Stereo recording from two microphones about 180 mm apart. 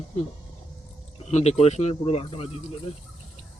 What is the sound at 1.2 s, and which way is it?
Speech, 40° left (ahead or behind).